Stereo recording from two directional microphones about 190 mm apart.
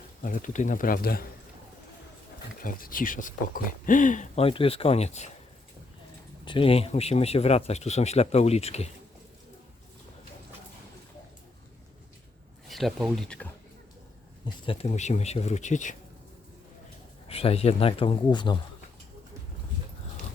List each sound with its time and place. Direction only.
0.2 s speech: 45° left (ahead or behind)
2.6 s speech: 50° left (ahead or behind)
6.4 s speech: 25° left (ahead or behind)
12.6 s speech: centre (ahead or behind)
14.4 s speech: 30° left (ahead or behind)
17.2 s speech: 30° left (ahead or behind)